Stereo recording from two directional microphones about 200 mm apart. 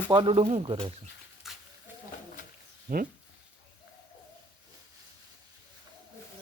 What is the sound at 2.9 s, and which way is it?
Speech, 45° right (ahead or behind).